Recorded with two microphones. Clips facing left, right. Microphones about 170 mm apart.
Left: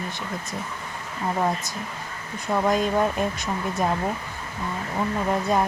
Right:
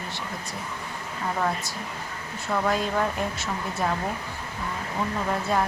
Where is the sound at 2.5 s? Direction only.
20° left (ahead or behind).